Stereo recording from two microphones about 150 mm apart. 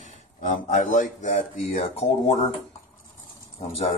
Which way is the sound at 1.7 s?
45° left (ahead or behind).